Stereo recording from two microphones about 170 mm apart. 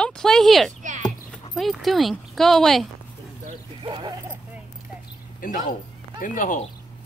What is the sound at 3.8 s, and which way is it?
Dog, 30° right (ahead or behind).